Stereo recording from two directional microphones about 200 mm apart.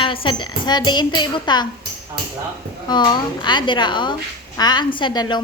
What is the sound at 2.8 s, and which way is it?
A woman's voice, 20° left (ahead or behind).